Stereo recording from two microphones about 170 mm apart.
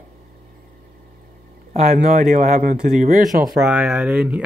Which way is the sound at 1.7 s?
45° right (ahead or behind).